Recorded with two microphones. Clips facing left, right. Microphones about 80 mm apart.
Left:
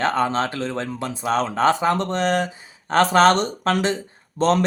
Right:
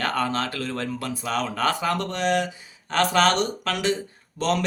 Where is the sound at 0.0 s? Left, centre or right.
Left.